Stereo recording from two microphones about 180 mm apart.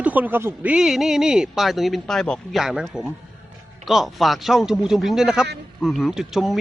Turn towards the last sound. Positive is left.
turn(degrees=0)  # may be behind; listen again after turning